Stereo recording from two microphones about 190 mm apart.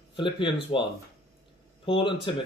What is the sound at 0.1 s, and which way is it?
Speech, 25° left (ahead or behind).